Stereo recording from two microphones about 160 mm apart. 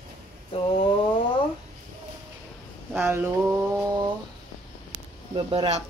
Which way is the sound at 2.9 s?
15° right (ahead or behind).